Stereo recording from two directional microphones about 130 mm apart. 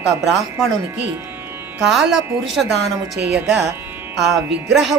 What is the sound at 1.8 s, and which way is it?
A woman's voice, centre (ahead or behind).